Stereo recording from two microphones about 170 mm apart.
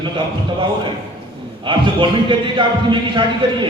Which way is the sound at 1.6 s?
30° right (ahead or behind).